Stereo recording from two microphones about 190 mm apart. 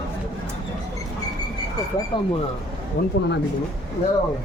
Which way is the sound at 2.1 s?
25° left (ahead or behind).